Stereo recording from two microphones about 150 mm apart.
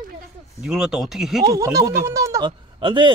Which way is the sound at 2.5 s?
30° right (ahead or behind).